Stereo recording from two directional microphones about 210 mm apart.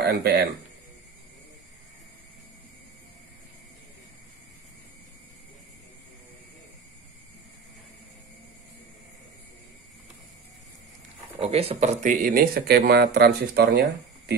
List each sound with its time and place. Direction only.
0.0 s speech: 50° right (ahead or behind)
11.3 s speech: 30° right (ahead or behind); by 14.3 s 50° right (ahead or behind)